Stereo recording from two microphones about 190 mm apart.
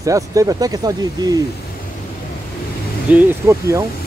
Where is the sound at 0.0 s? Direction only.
15° right (ahead or behind).